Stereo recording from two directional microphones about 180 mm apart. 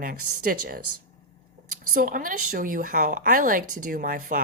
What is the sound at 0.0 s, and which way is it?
Speech, 55° right (ahead or behind).